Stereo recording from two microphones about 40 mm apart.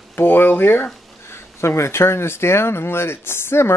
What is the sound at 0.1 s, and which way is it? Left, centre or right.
Speech, left.